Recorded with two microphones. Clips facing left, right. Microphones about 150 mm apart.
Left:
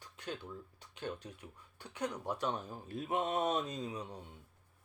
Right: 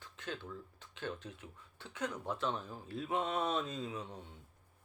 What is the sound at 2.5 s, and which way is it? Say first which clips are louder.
Speech: left 1 dB; 45° left (ahead or behind).